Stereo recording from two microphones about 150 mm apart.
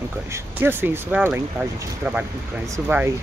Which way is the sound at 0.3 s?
15° right (ahead or behind).